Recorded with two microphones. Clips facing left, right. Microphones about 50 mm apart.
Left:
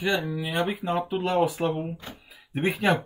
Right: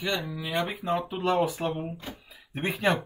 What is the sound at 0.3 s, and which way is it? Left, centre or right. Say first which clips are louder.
Speech: left 3 dB; left.